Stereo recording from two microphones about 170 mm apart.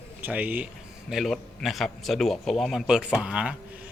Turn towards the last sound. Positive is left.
turn(degrees=-5)  # may be behind; listen again after turning